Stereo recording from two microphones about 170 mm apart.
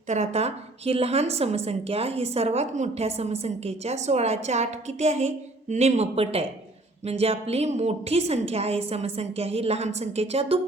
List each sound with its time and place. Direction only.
0.1 s a woman's voice: 40° right (ahead or behind)